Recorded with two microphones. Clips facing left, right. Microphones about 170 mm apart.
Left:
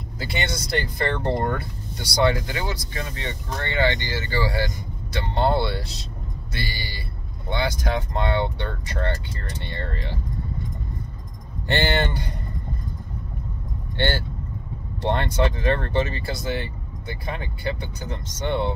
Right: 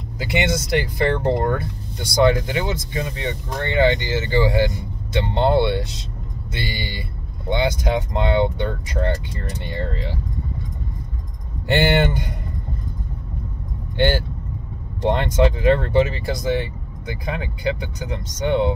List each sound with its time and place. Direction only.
0.2 s speech: 15° right (ahead or behind)
11.6 s speech: 15° right (ahead or behind)
13.9 s speech: 15° right (ahead or behind)